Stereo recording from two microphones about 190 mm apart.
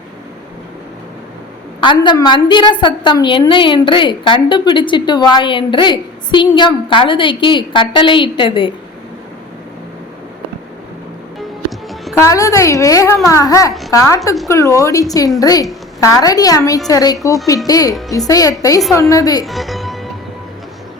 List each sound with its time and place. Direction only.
1.8 s a woman's voice: 25° left (ahead or behind)
12.2 s a woman's voice: 15° left (ahead or behind)
19.5 s music: centre (ahead or behind)